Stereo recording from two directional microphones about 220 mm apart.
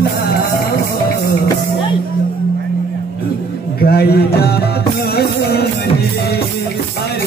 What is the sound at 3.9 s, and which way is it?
Speech, 45° left (ahead or behind).